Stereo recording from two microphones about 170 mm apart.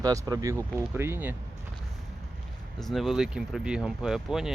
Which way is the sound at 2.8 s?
Centre (ahead or behind).